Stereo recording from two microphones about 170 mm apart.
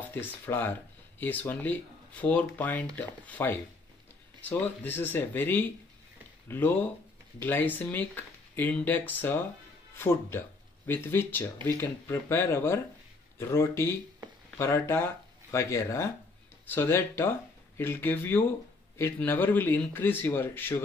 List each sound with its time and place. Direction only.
0.1 s speech: 10° left (ahead or behind)